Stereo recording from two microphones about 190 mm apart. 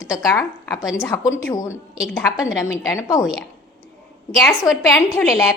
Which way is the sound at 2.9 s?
15° left (ahead or behind).